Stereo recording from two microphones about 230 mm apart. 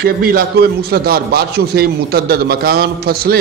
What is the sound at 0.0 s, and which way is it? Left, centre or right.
A man's voice, right.